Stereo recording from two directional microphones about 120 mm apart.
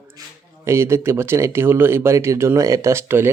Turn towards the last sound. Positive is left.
turn(degrees=-20)  # may be behind; listen again after turning